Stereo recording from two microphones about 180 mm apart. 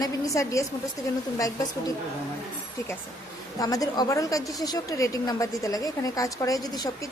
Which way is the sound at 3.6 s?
20° left (ahead or behind).